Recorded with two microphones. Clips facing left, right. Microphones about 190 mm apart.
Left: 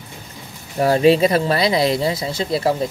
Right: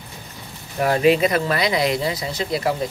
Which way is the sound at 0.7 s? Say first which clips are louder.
Left 3 dB; 30° left (ahead or behind).